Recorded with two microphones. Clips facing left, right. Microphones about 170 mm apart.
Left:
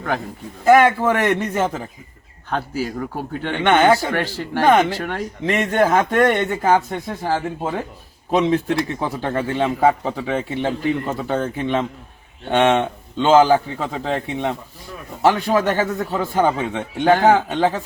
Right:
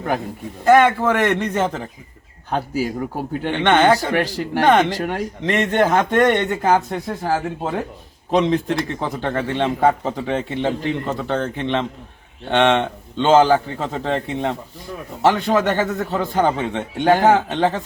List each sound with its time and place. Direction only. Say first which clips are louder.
0.6 s speech: even; 5° left (ahead or behind)
2.5 s a man's voice: right 2 dB; 15° right (ahead or behind)
3.6 s speech: even; 10° left (ahead or behind)
4.1 s a man's voice: right 2 dB; 15° right (ahead or behind)
4.6 s a man's voice: even; 5° left (ahead or behind)